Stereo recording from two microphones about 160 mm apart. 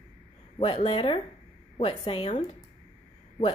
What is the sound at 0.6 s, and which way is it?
A woman's voice, 35° left (ahead or behind).